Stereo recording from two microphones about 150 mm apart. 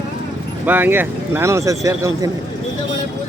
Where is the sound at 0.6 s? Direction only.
15° right (ahead or behind).